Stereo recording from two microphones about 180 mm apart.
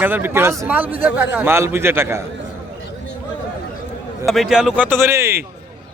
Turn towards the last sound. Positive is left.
turn(degrees=-15)  # may be behind; listen again after turning